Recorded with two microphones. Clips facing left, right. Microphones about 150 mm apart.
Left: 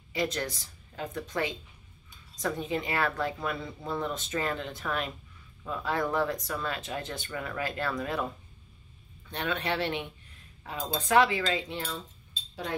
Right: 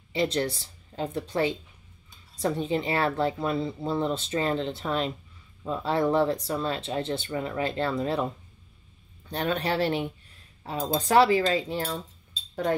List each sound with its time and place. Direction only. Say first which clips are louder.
0.1 s speech: right 5 dB; 30° right (ahead or behind)
9.3 s cutlery: right 4 dB; 35° right (ahead or behind)